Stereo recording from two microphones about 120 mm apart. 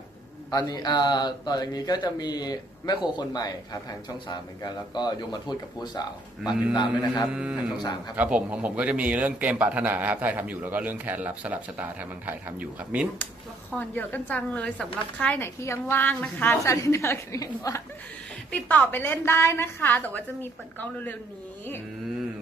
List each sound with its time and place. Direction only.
0.5 s speech: 30° left (ahead or behind)
7.2 s a man's voice: 10° right (ahead or behind)
13.7 s a woman's voice: 15° left (ahead or behind)
16.6 s a woman's voice: 25° left (ahead or behind)
18.5 s a woman's voice: 10° left (ahead or behind)